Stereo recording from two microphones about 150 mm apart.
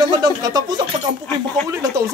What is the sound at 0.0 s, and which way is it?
A man's voice, 25° right (ahead or behind).